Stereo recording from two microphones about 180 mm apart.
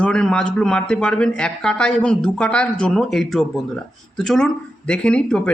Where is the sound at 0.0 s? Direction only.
5° left (ahead or behind).